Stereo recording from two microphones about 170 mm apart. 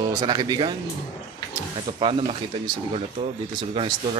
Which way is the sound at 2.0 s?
35° right (ahead or behind).